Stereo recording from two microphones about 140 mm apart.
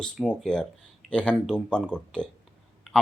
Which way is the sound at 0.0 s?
5° left (ahead or behind).